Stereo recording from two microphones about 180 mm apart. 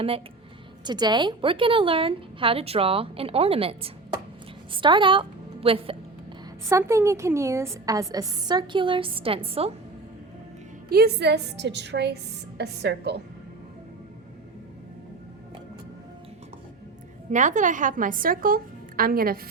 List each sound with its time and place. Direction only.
0.9 s a woman's voice: 25° right (ahead or behind)
6.7 s a woman's voice: 15° right (ahead or behind); by 9.7 s 30° right (ahead or behind)
10.8 s a woman's voice: 60° right (ahead or behind)
17.3 s a woman's voice: 45° right (ahead or behind)